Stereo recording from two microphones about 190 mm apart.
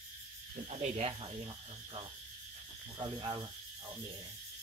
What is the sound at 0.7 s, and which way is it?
Speech, 35° right (ahead or behind).